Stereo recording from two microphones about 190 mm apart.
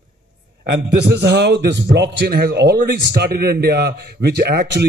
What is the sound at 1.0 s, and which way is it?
A man's voice, 60° right (ahead or behind).